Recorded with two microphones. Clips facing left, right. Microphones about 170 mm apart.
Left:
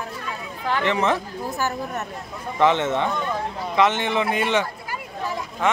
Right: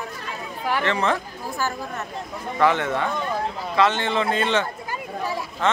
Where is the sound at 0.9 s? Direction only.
20° left (ahead or behind).